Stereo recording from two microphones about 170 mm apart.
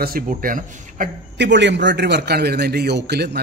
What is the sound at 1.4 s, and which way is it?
A man's voice, 90° right.